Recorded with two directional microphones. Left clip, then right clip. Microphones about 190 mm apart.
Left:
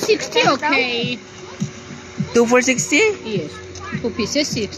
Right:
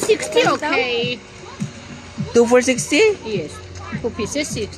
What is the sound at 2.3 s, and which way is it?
Speech, 20° right (ahead or behind).